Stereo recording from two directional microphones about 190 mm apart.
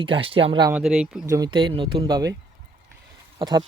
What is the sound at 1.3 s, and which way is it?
Speech, 20° right (ahead or behind).